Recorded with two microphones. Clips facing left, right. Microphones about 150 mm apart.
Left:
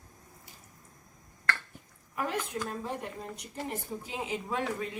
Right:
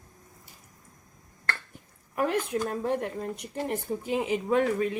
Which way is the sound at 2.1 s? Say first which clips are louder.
Right 6 dB; 60° right (ahead or behind).